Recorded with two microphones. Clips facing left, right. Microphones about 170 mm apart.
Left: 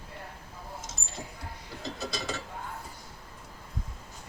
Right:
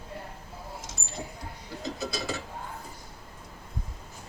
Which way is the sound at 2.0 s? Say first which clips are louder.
Right 2 dB; 5° right (ahead or behind).